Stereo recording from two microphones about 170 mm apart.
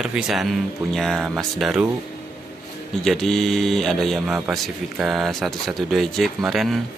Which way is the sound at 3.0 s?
Centre (ahead or behind).